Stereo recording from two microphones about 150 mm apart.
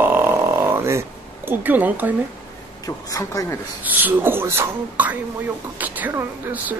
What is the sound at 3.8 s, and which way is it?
Speech, 10° right (ahead or behind).